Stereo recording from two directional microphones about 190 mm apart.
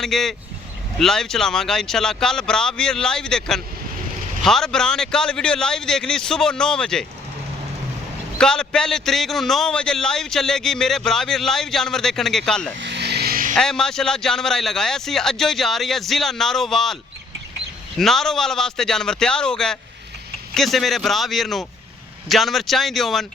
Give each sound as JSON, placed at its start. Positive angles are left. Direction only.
{"t": 0.0, "sound": "a man's voice", "side_deg": 0}
{"t": 8.4, "sound": "a man's voice", "side_deg": 5}
{"t": 12.8, "sound": "a sound", "side_deg": -65}
{"t": 13.5, "sound": "a man's voice", "side_deg": 5}